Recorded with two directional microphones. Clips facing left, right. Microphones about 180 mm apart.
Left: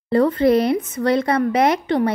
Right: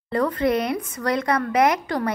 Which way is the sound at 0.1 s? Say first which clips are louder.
Left 6 dB; 30° left (ahead or behind).